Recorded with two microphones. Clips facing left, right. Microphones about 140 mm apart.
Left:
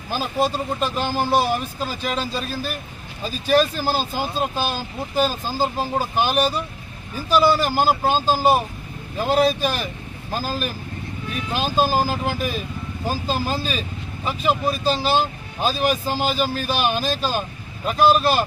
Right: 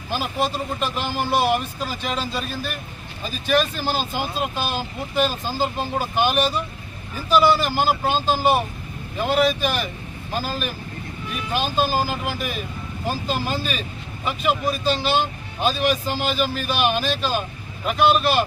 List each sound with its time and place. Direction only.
0.2 s speech: 40° left (ahead or behind)
12.0 s speech: 35° left (ahead or behind)